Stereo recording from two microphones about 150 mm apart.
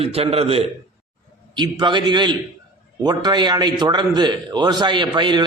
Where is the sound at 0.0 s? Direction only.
40° right (ahead or behind).